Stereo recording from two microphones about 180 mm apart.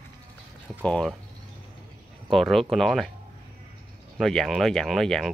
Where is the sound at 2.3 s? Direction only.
Centre (ahead or behind).